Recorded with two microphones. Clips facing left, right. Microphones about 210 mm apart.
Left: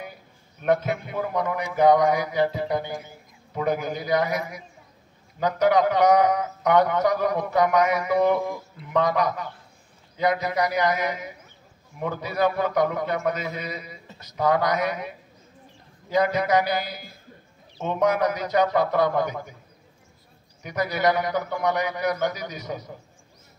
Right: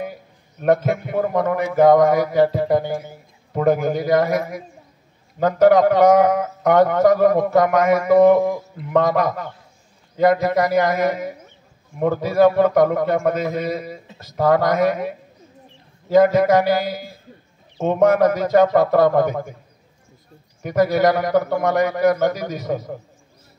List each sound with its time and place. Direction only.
0.0 s a man's voice: 45° right (ahead or behind)
20.6 s a man's voice: 45° right (ahead or behind)